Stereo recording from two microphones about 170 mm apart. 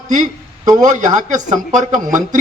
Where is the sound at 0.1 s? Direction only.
45° right (ahead or behind).